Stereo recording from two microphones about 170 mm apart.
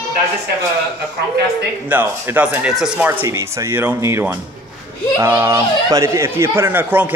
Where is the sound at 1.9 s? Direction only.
10° right (ahead or behind).